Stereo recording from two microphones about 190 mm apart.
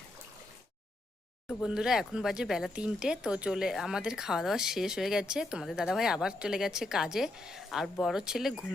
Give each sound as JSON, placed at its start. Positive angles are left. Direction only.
{"t": 1.5, "sound": "speech", "side_deg": -5}